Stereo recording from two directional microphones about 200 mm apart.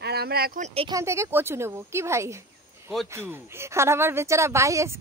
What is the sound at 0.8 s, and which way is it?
A woman's voice, 15° right (ahead or behind).